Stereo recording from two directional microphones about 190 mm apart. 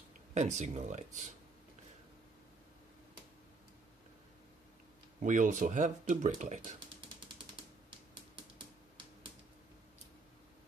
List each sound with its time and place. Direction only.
0.3 s speech: 40° right (ahead or behind)
5.2 s speech: 40° right (ahead or behind)